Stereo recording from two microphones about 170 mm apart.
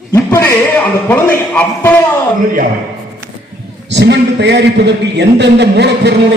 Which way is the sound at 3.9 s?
85° right.